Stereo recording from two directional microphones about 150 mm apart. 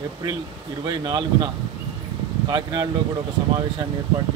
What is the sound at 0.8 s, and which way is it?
Speech, 30° right (ahead or behind).